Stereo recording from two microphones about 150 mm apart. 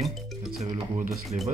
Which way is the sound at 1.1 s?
Centre (ahead or behind).